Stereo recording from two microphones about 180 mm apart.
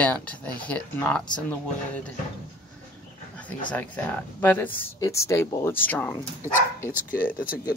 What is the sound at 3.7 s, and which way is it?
Speech, 10° left (ahead or behind).